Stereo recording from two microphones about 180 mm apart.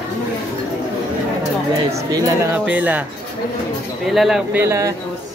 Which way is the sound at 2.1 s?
20° right (ahead or behind).